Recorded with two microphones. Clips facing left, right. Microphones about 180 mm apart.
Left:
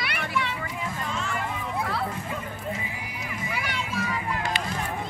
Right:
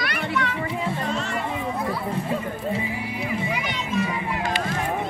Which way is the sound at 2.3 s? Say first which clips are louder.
Right 7 dB; 30° right (ahead or behind).